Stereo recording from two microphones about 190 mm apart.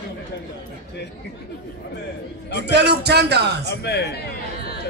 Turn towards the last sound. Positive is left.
turn(degrees=60)  # may be behind; listen again after turning